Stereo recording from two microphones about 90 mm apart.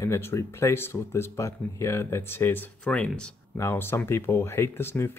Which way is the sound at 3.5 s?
25° left (ahead or behind).